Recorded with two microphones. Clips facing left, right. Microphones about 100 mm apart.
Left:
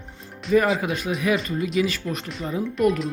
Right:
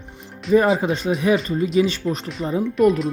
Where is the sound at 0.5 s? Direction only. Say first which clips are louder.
Right 3 dB; 30° right (ahead or behind).